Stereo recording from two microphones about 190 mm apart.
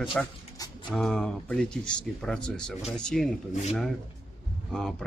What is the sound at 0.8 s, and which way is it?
Speech, centre (ahead or behind).